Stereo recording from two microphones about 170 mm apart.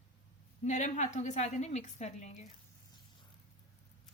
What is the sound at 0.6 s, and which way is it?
A woman's voice, 45° left (ahead or behind).